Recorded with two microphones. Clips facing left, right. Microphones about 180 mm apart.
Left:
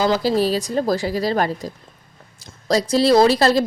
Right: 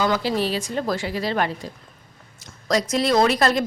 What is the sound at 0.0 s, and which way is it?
A woman's voice, 35° left (ahead or behind).